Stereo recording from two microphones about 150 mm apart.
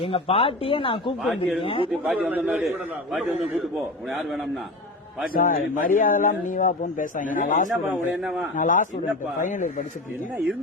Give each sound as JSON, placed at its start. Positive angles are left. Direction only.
{"t": 0.0, "sound": "speech", "side_deg": 40}
{"t": 1.2, "sound": "a man's voice", "side_deg": 0}
{"t": 1.6, "sound": "speech", "side_deg": 35}
{"t": 1.9, "sound": "a man's voice", "side_deg": -10}
{"t": 4.1, "sound": "a man's voice", "side_deg": 0}
{"t": 5.3, "sound": "a man's voice", "side_deg": 70}
{"t": 7.9, "sound": "a man's voice", "side_deg": -5}
{"t": 8.5, "sound": "a man's voice", "side_deg": 60}